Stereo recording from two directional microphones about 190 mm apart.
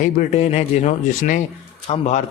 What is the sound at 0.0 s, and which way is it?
A man's voice, 40° left (ahead or behind).